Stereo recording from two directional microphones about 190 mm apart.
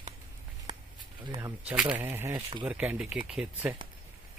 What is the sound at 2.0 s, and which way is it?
Speech, 10° right (ahead or behind).